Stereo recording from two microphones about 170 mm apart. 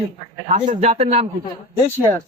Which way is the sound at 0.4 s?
45° right (ahead or behind).